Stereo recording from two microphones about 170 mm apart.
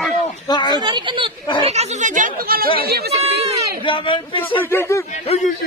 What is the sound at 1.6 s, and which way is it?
Speech, 40° right (ahead or behind).